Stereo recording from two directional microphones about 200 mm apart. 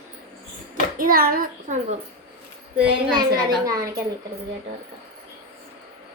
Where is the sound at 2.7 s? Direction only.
5° right (ahead or behind).